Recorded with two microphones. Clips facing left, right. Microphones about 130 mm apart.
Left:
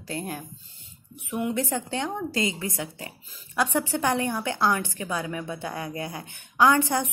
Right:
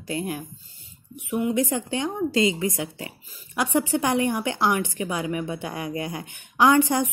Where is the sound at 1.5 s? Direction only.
15° right (ahead or behind).